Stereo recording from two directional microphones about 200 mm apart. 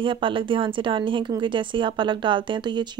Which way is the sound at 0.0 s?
25° right (ahead or behind).